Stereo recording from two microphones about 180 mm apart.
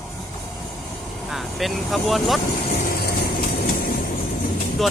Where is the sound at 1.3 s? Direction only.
Centre (ahead or behind).